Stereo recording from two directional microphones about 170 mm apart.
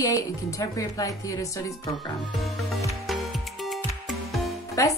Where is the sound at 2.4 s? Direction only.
Centre (ahead or behind).